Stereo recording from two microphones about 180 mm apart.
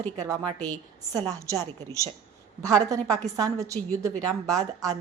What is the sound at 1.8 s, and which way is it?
A woman's voice, 15° right (ahead or behind).